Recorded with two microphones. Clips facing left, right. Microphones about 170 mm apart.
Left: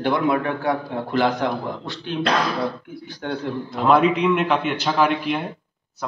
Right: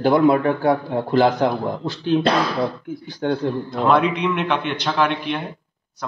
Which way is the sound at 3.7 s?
5° left (ahead or behind).